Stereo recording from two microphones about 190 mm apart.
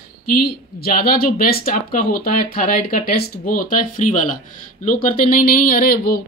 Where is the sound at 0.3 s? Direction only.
50° left (ahead or behind).